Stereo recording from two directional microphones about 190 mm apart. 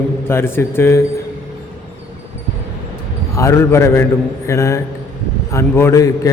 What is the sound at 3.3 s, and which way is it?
A man's voice, 15° left (ahead or behind).